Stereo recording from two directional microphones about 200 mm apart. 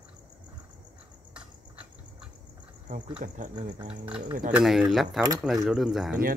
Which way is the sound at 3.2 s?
40° right (ahead or behind).